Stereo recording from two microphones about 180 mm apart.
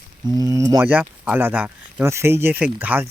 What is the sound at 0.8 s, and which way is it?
Speech, 10° right (ahead or behind).